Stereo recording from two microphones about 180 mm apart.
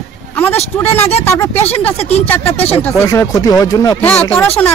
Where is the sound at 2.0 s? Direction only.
35° left (ahead or behind).